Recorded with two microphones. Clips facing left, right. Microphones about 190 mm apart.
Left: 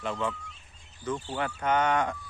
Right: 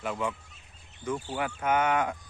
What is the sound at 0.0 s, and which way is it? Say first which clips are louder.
Speech: even; 10° right (ahead or behind).